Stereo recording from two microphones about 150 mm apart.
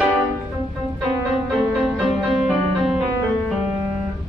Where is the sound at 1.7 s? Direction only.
5° right (ahead or behind).